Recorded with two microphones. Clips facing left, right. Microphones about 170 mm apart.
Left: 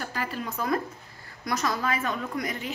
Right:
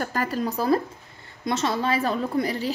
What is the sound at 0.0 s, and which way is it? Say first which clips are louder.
A woman's voice: right 7 dB; 45° right (ahead or behind).